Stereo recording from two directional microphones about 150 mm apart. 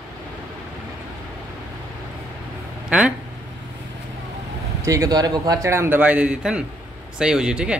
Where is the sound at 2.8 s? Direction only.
5° right (ahead or behind).